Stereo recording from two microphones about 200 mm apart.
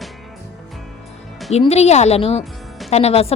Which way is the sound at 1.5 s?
30° left (ahead or behind).